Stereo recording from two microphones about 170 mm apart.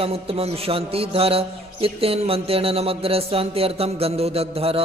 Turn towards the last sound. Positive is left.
turn(degrees=-35)  # may be behind; listen again after turning